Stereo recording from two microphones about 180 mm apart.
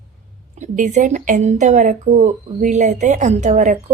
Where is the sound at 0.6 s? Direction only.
45° right (ahead or behind).